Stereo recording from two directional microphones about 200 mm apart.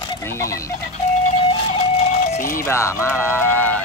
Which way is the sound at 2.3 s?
45° left (ahead or behind).